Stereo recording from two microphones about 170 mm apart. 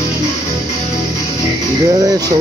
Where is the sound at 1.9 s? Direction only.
20° right (ahead or behind).